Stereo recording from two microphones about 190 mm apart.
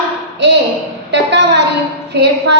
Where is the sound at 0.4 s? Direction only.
65° right (ahead or behind).